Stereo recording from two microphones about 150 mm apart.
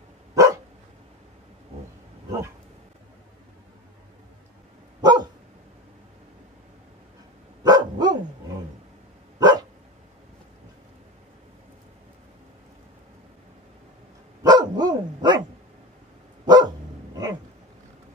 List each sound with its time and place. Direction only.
0.3 s dog: 20° right (ahead or behind)
5.0 s dog: 30° right (ahead or behind)
7.6 s dog: 25° right (ahead or behind)
9.4 s dog: 25° right (ahead or behind)
14.4 s dog: 25° right (ahead or behind)
16.4 s dog: 25° right (ahead or behind)